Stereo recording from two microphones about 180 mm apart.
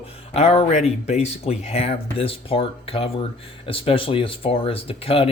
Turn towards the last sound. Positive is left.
turn(degrees=30)  # may be behind; listen again after turning